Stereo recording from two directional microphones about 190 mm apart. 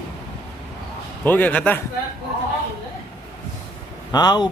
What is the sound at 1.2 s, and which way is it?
Speech, 10° left (ahead or behind).